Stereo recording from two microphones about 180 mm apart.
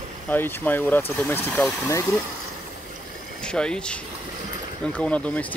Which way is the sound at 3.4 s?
5° left (ahead or behind).